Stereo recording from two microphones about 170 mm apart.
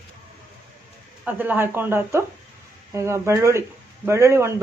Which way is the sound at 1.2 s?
10° right (ahead or behind).